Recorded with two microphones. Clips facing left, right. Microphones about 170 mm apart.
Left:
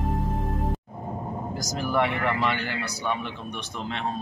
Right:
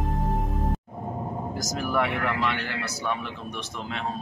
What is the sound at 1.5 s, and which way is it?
Speech, centre (ahead or behind).